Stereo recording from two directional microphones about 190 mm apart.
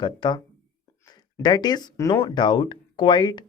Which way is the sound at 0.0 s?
25° left (ahead or behind).